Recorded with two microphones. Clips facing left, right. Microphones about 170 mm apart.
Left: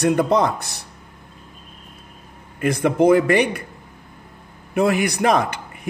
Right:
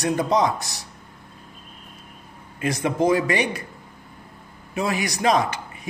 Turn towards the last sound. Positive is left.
turn(degrees=55)  # may be behind; listen again after turning